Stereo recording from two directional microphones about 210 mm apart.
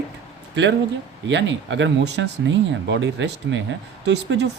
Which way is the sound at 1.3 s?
60° right (ahead or behind).